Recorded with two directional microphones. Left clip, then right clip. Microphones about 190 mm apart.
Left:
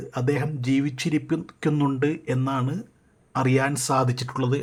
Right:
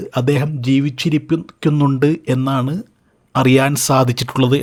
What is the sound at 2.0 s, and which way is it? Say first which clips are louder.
Speech: right 9 dB; 40° right (ahead or behind).